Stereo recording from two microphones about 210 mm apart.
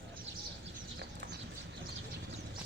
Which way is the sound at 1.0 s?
55° right (ahead or behind).